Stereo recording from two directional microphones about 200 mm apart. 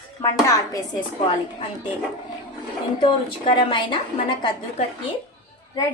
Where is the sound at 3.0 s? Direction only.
25° left (ahead or behind).